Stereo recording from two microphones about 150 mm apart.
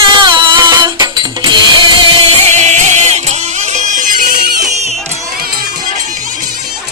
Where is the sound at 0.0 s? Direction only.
30° right (ahead or behind).